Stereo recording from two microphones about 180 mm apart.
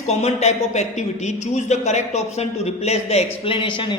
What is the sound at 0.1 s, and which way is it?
A man's voice, 35° left (ahead or behind).